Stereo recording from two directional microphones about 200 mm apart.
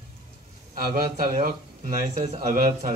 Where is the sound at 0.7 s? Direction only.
45° right (ahead or behind).